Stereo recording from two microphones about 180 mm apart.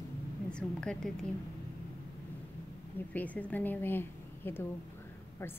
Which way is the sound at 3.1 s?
10° left (ahead or behind).